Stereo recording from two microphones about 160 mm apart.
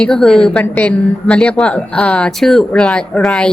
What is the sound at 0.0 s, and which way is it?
A woman's voice, 5° left (ahead or behind).